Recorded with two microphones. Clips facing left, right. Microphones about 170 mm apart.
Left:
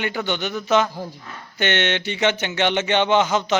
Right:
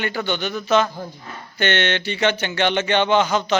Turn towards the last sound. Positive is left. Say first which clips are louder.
# even
turn(degrees=20)  # may be behind; listen again after turning